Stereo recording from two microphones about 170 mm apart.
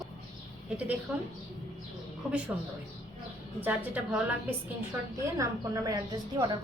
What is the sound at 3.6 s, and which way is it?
Speech, 10° right (ahead or behind).